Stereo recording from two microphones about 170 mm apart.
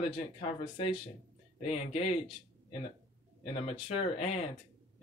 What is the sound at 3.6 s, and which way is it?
Speech, 35° left (ahead or behind).